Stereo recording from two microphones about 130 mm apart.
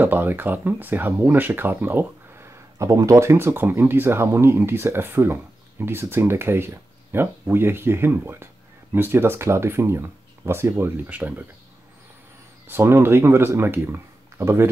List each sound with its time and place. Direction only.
0.0 s speech: 15° right (ahead or behind)
12.6 s speech: 15° right (ahead or behind)